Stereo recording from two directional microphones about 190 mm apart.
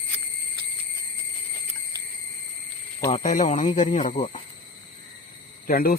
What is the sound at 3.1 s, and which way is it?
Speech, 45° left (ahead or behind).